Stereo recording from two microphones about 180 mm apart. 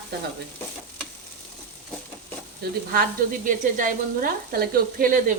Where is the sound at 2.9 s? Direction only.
50° right (ahead or behind).